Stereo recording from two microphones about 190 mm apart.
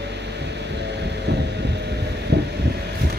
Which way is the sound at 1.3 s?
65° right (ahead or behind).